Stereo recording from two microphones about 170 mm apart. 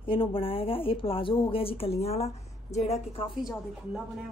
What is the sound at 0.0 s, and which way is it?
Speech, 30° left (ahead or behind).